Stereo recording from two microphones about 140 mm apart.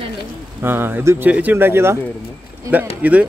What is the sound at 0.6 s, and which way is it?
Speech, 15° right (ahead or behind).